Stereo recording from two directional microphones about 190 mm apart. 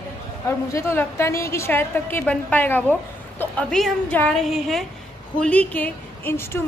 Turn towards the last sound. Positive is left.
turn(degrees=10)  # may be behind; listen again after turning